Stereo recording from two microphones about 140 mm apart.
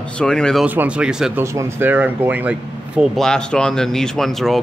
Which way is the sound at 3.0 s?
5° left (ahead or behind).